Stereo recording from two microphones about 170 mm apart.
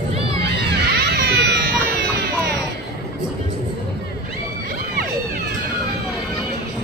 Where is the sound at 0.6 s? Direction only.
70° right (ahead or behind).